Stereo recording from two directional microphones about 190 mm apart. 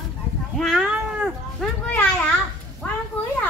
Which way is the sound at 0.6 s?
Centre (ahead or behind).